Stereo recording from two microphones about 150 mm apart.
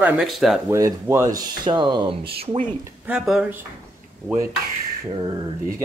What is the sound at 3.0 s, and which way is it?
Speech, 5° right (ahead or behind).